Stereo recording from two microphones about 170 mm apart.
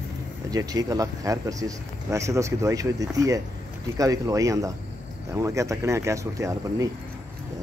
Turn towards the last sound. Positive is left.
turn(degrees=-20)  # may be behind; listen again after turning